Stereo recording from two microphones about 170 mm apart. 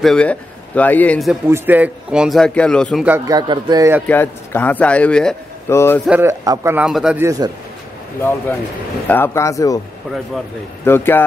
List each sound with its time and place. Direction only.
0.0 s a man's voice: 5° left (ahead or behind)
1.5 s a man's voice: 10° right (ahead or behind)
3.3 s speech: 25° right (ahead or behind)
4.1 s a man's voice: 10° left (ahead or behind)
6.0 s speech: 10° right (ahead or behind)
6.9 s a man's voice: centre (ahead or behind)
7.2 s speech: 20° right (ahead or behind)
8.2 s a man's voice: 15° left (ahead or behind)
10.9 s a man's voice: 15° left (ahead or behind)